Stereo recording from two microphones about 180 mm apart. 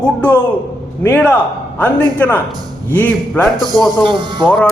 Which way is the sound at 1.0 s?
10° left (ahead or behind).